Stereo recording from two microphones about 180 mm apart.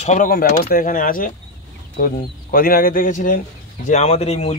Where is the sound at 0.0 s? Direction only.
45° left (ahead or behind).